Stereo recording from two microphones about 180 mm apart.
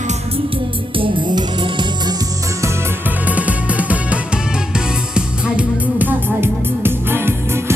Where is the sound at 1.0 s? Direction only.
25° right (ahead or behind).